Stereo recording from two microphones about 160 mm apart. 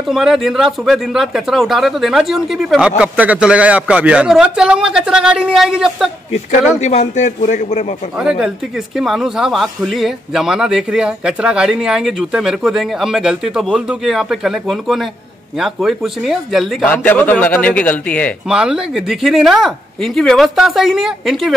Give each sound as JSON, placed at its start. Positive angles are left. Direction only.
{"t": 0.1, "sound": "a man's voice", "side_deg": 0}
{"t": 6.8, "sound": "a man's voice", "side_deg": 45}
{"t": 8.2, "sound": "a man's voice", "side_deg": -5}
{"t": 16.8, "sound": "a man's voice", "side_deg": 10}
{"t": 18.5, "sound": "a man's voice", "side_deg": -5}